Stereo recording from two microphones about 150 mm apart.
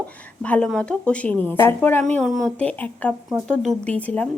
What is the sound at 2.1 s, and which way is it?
Speech, centre (ahead or behind).